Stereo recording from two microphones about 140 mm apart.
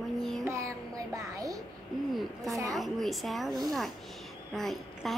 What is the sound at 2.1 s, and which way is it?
A woman's voice, centre (ahead or behind).